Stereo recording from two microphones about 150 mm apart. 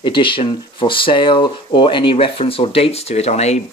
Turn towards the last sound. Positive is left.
turn(degrees=45)  # may be behind; listen again after turning